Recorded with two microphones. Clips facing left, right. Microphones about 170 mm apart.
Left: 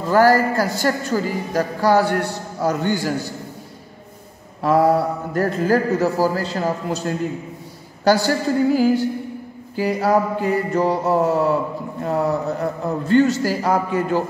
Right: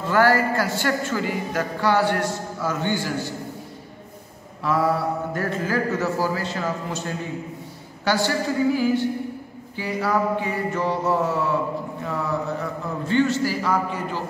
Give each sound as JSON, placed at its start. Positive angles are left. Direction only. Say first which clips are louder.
{"t": 0.1, "sound": "a man's voice", "louder": "left 4 dB", "side_deg": 40}
{"t": 4.6, "sound": "a man's voice", "louder": "left 6 dB", "side_deg": 45}